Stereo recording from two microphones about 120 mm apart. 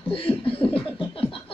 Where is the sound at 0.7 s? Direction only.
50° left (ahead or behind).